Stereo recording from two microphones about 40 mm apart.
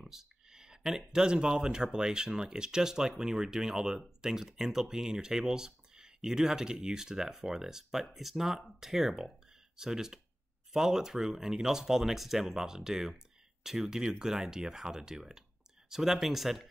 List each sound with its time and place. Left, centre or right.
0.0 s speech: centre